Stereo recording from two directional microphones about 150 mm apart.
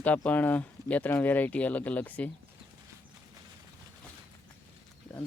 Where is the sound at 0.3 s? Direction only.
10° left (ahead or behind).